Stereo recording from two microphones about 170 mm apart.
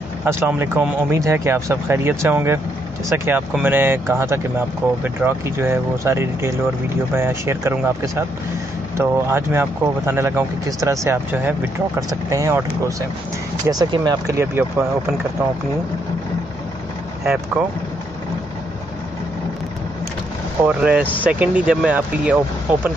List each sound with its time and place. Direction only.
0.2 s speech: 15° right (ahead or behind)
17.2 s speech: 5° right (ahead or behind)
20.6 s speech: 10° right (ahead or behind)